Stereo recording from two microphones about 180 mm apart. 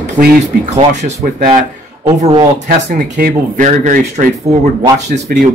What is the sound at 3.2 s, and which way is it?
Speech, 45° right (ahead or behind).